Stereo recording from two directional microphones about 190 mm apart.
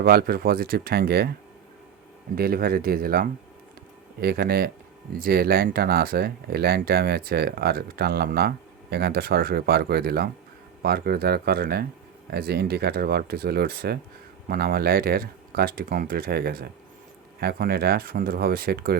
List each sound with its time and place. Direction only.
0.0 s speech: 55° right (ahead or behind)
2.3 s speech: 50° right (ahead or behind)